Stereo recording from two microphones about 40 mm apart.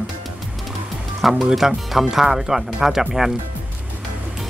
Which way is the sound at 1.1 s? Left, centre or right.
Centre.